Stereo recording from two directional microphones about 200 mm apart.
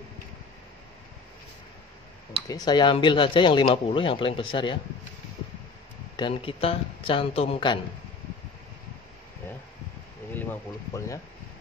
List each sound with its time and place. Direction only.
2.4 s speech: 20° left (ahead or behind)
6.1 s speech: 25° left (ahead or behind)
10.3 s speech: 10° left (ahead or behind)